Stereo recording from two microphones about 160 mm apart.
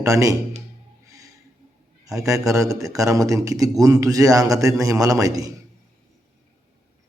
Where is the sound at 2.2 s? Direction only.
20° right (ahead or behind).